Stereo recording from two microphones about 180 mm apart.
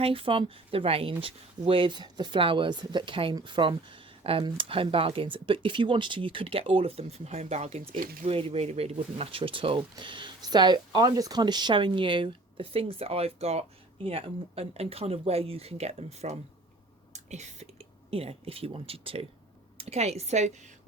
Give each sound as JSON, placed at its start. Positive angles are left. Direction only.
{"t": 0.0, "sound": "speech", "side_deg": -30}
{"t": 7.9, "sound": "speech", "side_deg": -50}
{"t": 8.3, "sound": "speech", "side_deg": -30}
{"t": 17.1, "sound": "a sound", "side_deg": -40}
{"t": 18.1, "sound": "speech", "side_deg": -35}